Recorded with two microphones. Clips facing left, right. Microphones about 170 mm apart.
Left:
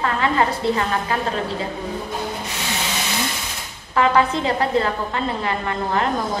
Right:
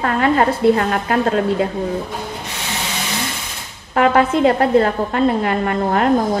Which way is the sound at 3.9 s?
50° right (ahead or behind).